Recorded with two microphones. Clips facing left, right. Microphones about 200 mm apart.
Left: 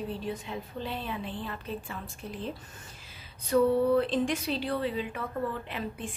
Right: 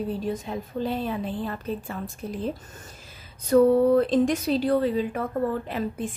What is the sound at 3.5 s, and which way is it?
A woman's voice, 45° right (ahead or behind).